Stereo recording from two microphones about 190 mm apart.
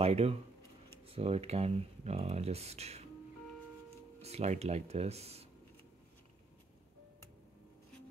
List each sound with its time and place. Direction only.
0.0 s speech: 30° right (ahead or behind)
4.2 s speech: 35° right (ahead or behind)